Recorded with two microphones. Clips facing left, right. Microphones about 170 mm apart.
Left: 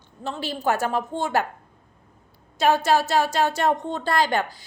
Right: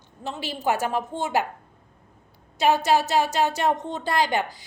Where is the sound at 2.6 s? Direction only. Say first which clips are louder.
Left 1 dB; 15° right (ahead or behind).